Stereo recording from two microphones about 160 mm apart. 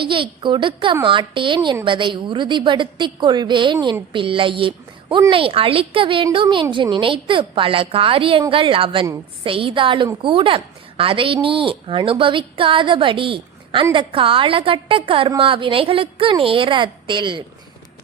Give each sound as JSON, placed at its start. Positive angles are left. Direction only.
{"t": 0.0, "sound": "a woman's voice", "side_deg": -30}